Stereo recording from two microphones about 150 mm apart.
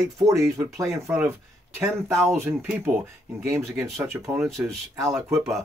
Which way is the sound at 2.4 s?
5° right (ahead or behind).